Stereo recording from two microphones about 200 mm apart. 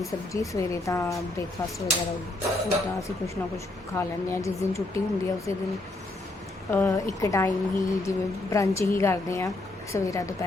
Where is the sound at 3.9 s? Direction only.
15° left (ahead or behind).